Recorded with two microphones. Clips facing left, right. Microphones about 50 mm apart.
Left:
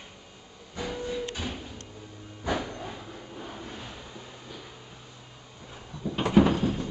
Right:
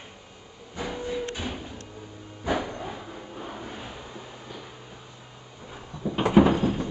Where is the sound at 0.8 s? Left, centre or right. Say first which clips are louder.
Right 2 dB; centre.